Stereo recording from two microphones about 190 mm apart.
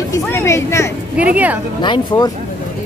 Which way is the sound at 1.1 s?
5° right (ahead or behind).